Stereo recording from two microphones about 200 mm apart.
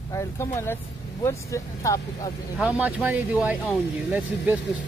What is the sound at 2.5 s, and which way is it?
Speech, 5° right (ahead or behind).